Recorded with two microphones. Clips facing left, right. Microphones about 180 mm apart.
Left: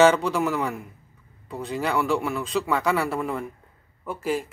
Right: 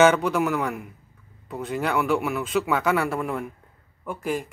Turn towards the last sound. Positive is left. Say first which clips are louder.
# left 1 dB
turn(degrees=0)  # may be behind; listen again after turning